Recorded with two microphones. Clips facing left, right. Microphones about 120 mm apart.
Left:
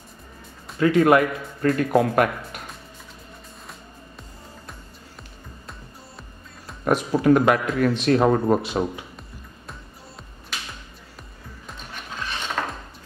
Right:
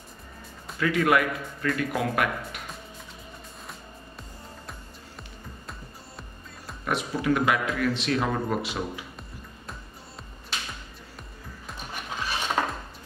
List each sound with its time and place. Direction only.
0.7 s speech: 35° left (ahead or behind)
6.8 s speech: 45° left (ahead or behind)
11.9 s music: 10° right (ahead or behind)